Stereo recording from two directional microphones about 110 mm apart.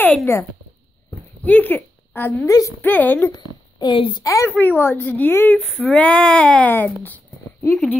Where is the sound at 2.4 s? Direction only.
30° left (ahead or behind).